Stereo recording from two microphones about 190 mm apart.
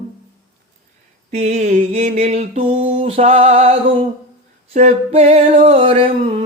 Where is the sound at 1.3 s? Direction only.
35° right (ahead or behind).